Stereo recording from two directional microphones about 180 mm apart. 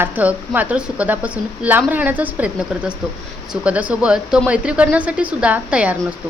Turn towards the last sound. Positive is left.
turn(degrees=-5)  # may be behind; listen again after turning